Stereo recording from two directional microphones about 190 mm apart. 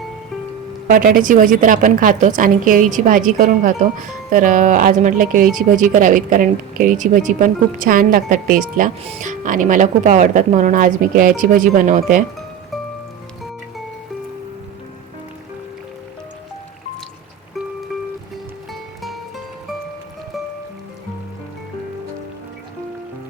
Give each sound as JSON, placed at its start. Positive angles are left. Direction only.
{"t": 0.9, "sound": "a woman's voice", "side_deg": -45}